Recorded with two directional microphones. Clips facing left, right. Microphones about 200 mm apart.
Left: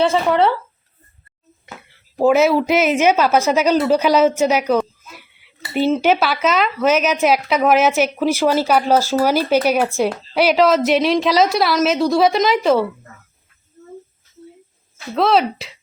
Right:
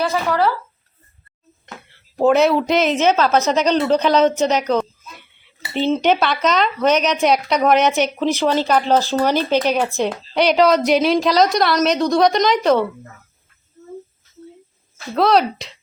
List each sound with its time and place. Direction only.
0.0 s speech: 25° left (ahead or behind)
1.6 s speech: 5° left (ahead or behind)
15.1 s speech: centre (ahead or behind)